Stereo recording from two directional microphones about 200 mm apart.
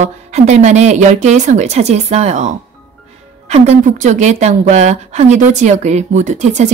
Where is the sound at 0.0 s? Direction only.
35° right (ahead or behind).